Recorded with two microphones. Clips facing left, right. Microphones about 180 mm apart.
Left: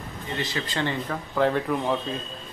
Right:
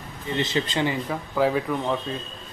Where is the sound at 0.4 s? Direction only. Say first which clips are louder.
Right 5 dB; 20° right (ahead or behind).